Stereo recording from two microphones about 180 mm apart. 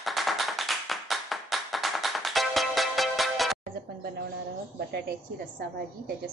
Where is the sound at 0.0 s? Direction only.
Centre (ahead or behind).